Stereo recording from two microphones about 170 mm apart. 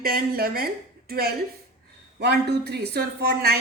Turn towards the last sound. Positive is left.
turn(degrees=-65)  # may be behind; listen again after turning